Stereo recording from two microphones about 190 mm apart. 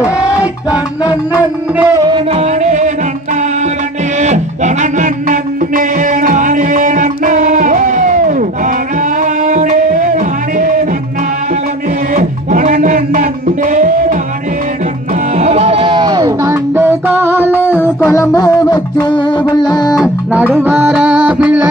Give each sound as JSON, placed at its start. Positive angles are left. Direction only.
{"t": 1.3, "sound": "music", "side_deg": -10}
{"t": 4.2, "sound": "music", "side_deg": -40}
{"t": 12.1, "sound": "music", "side_deg": -40}
{"t": 15.3, "sound": "music", "side_deg": -35}
{"t": 18.0, "sound": "music", "side_deg": 15}
{"t": 20.3, "sound": "music", "side_deg": -10}